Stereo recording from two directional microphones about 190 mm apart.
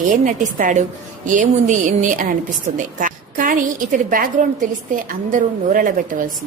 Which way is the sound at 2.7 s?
45° right (ahead or behind).